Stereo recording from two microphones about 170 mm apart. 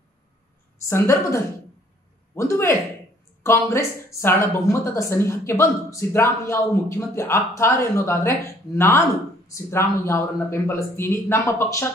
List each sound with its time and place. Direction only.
0.8 s speech: 15° left (ahead or behind)